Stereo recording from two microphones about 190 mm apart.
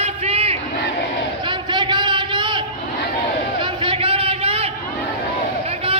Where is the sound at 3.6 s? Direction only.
25° right (ahead or behind).